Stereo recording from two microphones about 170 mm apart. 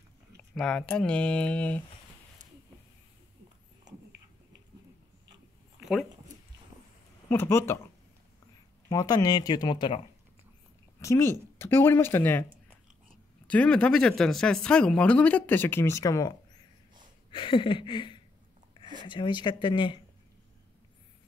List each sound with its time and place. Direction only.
0.4 s speech: 5° left (ahead or behind)
5.8 s a sound: centre (ahead or behind)
7.2 s speech: 15° left (ahead or behind)
8.8 s speech: 20° left (ahead or behind)
11.0 s speech: 15° left (ahead or behind)
13.5 s speech: 5° left (ahead or behind); by 20.0 s 30° left (ahead or behind)